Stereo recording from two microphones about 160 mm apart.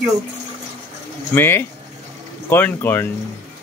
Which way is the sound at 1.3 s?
15° left (ahead or behind).